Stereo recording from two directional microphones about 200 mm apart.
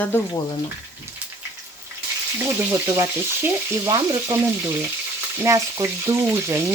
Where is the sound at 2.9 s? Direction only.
15° right (ahead or behind).